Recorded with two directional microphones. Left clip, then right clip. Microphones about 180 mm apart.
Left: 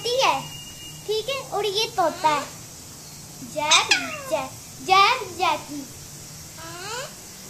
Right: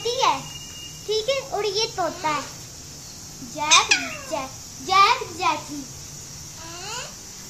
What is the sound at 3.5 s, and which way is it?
A child's voice, 15° left (ahead or behind).